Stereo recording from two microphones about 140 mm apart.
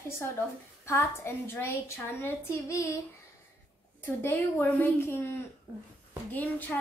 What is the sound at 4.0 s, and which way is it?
A woman's voice, 15° left (ahead or behind).